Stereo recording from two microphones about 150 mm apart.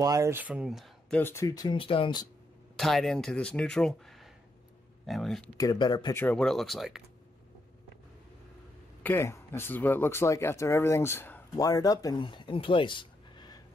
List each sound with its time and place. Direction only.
0.0 s speech: 20° right (ahead or behind); by 1.2 s centre (ahead or behind)
1.2 s speech: 20° left (ahead or behind)
2.7 s speech: centre (ahead or behind)
5.6 s speech: 30° left (ahead or behind)
6.1 s speech: 10° left (ahead or behind)
9.0 s speech: 15° left (ahead or behind); by 13.6 s 30° left (ahead or behind)